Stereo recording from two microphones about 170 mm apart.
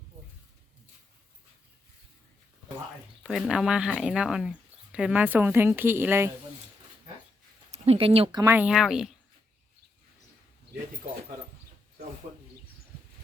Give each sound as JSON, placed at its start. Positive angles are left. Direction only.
{"t": 3.2, "sound": "speech", "side_deg": 0}
{"t": 7.7, "sound": "speech", "side_deg": -35}
{"t": 8.4, "sound": "speech", "side_deg": -10}